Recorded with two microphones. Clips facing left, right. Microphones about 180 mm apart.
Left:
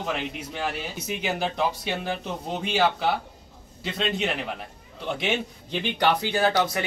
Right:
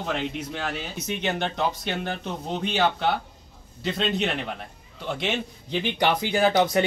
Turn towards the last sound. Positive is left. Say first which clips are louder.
# right 3 dB
turn(degrees=-20)  # may be behind; listen again after turning